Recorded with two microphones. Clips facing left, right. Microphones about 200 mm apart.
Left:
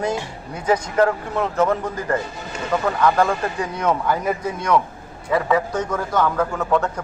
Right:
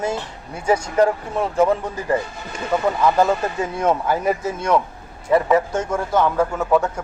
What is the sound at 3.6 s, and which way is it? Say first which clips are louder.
Speech: right 2 dB; 25° right (ahead or behind).